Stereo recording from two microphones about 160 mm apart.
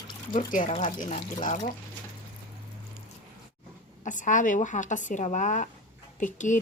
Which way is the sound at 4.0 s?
50° left (ahead or behind).